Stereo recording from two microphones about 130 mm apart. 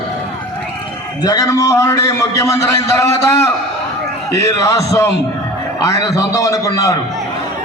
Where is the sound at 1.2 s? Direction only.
30° left (ahead or behind).